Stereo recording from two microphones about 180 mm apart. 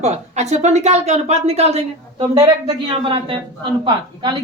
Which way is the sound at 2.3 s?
20° right (ahead or behind).